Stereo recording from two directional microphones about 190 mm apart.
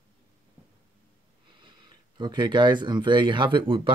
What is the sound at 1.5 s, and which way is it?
Speech, 25° right (ahead or behind).